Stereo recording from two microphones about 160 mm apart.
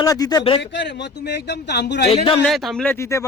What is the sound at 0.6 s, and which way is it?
Speech, 90° left.